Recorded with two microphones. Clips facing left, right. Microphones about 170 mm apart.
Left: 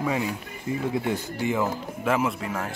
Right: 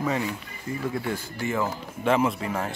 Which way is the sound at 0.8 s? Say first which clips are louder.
Left 2 dB; 20° left (ahead or behind).